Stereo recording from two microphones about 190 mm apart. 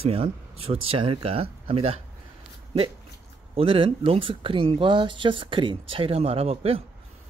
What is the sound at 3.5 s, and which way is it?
Speech, 30° right (ahead or behind).